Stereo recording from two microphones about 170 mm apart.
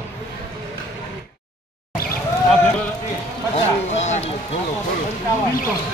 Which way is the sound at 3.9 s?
40° left (ahead or behind).